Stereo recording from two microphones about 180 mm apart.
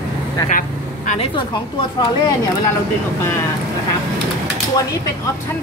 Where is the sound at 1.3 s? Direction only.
25° left (ahead or behind).